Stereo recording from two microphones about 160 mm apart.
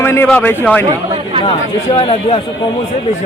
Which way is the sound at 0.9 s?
35° right (ahead or behind).